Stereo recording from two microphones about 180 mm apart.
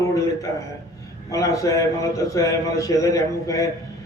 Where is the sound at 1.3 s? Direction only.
20° left (ahead or behind).